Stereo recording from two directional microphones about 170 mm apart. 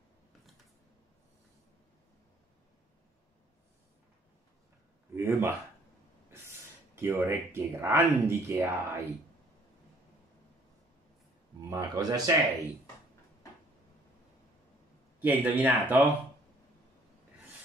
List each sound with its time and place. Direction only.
5.1 s a sound: 15° right (ahead or behind)
7.0 s speech: 15° right (ahead or behind)
11.7 s speech: 20° right (ahead or behind)
15.1 s speech: 10° right (ahead or behind)